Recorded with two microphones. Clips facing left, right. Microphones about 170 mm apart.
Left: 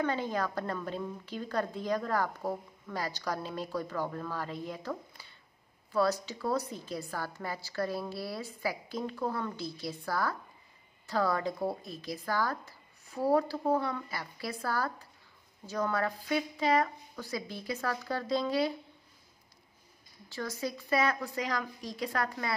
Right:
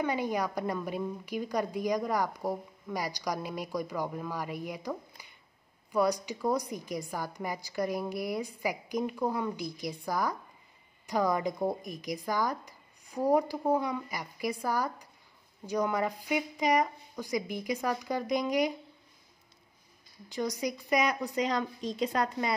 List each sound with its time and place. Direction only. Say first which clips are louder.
0.0 s a woman's voice: right 1 dB; 15° right (ahead or behind)
20.2 s speech: right 4 dB; 15° right (ahead or behind)